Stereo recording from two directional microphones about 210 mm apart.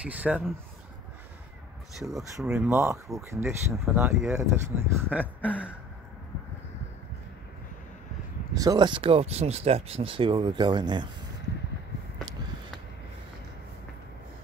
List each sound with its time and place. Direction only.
0.0 s speech: 5° right (ahead or behind)
2.0 s speech: centre (ahead or behind)
8.5 s speech: 20° right (ahead or behind)